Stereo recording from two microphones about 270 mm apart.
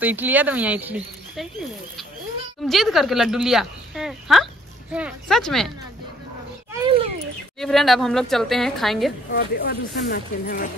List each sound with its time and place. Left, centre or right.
0.0 s speech: centre
7.5 s speech: centre
9.3 s speech: left